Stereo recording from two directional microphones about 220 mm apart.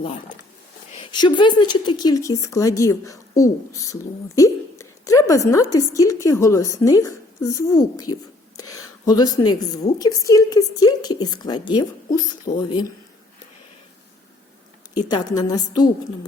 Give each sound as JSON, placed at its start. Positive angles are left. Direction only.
{"t": 0.9, "sound": "a woman's voice", "side_deg": 20}
{"t": 4.4, "sound": "a sound", "side_deg": 15}
{"t": 5.3, "sound": "a woman's voice", "side_deg": 15}
{"t": 14.9, "sound": "a woman's voice", "side_deg": 20}